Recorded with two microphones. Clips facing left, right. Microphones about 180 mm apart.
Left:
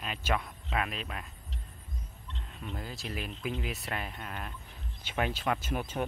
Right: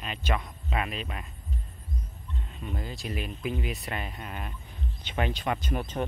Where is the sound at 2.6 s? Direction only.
Centre (ahead or behind).